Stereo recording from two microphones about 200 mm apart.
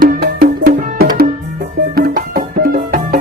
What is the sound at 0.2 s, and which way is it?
Music, 50° right (ahead or behind).